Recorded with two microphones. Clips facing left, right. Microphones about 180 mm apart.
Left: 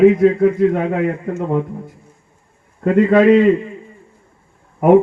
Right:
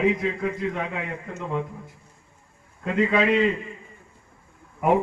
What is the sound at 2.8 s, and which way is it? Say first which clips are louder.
Speech: left 10 dB; 55° left (ahead or behind).